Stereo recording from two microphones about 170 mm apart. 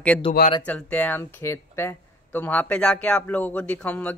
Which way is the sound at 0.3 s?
35° left (ahead or behind).